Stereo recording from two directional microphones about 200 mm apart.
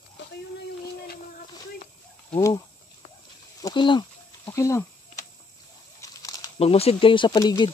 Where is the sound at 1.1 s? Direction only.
45° left (ahead or behind).